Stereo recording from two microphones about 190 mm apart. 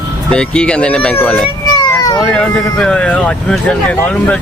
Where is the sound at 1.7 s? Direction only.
20° left (ahead or behind).